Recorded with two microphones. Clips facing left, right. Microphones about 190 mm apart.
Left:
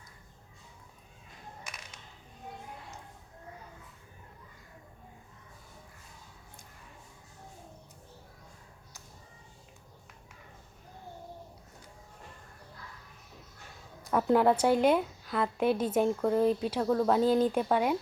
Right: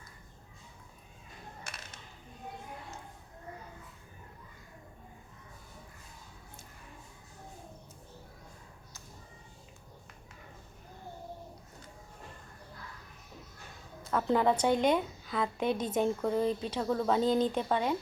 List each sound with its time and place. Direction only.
14.0 s a woman's voice: 15° left (ahead or behind)